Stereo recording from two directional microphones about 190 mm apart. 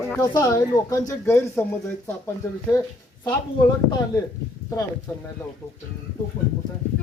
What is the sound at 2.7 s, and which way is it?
Speech, 20° left (ahead or behind).